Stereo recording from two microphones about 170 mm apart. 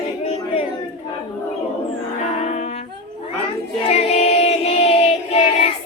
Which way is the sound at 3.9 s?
40° left (ahead or behind).